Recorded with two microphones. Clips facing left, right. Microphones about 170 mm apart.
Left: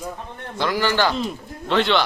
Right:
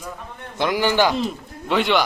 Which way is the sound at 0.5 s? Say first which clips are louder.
Right 2 dB; 15° right (ahead or behind).